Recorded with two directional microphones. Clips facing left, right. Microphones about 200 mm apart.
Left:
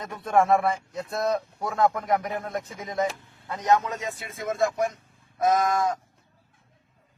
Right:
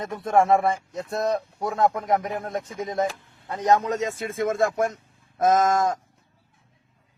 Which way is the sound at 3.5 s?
35° right (ahead or behind).